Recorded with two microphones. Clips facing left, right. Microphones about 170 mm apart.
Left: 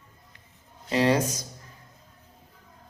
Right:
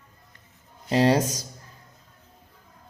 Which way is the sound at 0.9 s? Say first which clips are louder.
Right 2 dB; 35° right (ahead or behind).